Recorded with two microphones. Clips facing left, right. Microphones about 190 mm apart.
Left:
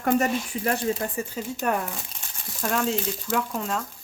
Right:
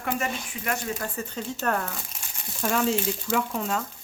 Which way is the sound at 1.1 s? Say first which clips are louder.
Left 2 dB; 15° left (ahead or behind).